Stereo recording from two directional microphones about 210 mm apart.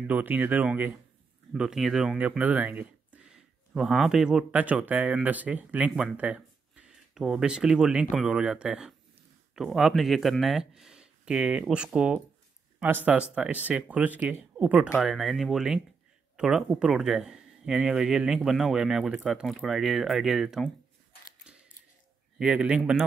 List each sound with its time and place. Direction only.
0.0 s speech: 5° right (ahead or behind)
21.5 s scissors: 5° right (ahead or behind)
22.4 s speech: 5° right (ahead or behind)